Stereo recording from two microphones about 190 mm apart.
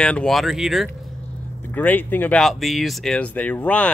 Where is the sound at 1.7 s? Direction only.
10° left (ahead or behind).